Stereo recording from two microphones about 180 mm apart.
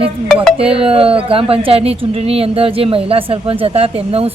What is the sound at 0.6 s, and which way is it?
A woman's voice, 30° right (ahead or behind).